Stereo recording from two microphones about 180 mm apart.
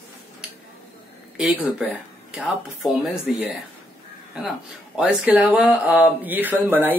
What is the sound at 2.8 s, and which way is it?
Speech, centre (ahead or behind).